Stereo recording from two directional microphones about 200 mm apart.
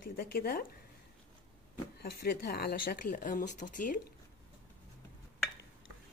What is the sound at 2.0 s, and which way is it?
Speech, 55° left (ahead or behind).